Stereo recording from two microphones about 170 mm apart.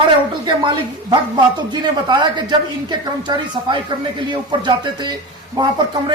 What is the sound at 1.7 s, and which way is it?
A woman's voice, 25° right (ahead or behind).